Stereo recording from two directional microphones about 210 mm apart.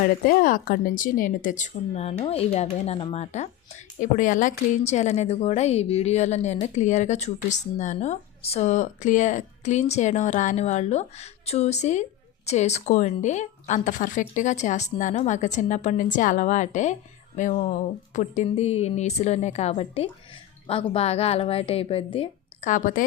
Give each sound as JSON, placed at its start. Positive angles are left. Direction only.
{"t": 0.3, "sound": "a woman's voice", "side_deg": 40}